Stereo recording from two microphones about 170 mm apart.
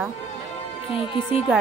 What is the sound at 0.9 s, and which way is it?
Speech, 30° left (ahead or behind).